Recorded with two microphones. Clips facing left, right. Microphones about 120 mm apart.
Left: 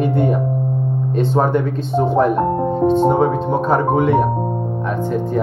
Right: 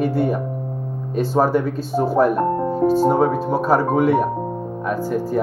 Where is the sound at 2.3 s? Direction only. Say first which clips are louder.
Left 2 dB; 25° left (ahead or behind).